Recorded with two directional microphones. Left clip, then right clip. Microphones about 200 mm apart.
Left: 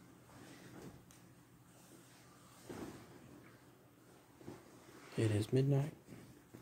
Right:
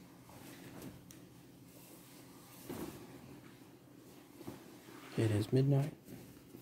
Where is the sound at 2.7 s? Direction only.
50° right (ahead or behind).